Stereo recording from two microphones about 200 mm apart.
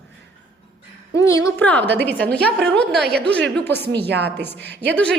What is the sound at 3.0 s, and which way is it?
Speech, 55° right (ahead or behind).